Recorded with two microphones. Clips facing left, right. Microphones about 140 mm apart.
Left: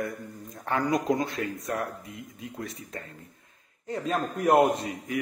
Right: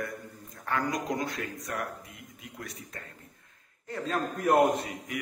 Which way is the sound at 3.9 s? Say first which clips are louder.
Left 3 dB; 20° left (ahead or behind).